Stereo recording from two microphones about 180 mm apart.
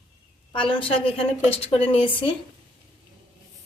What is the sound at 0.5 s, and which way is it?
A woman's voice, 30° left (ahead or behind).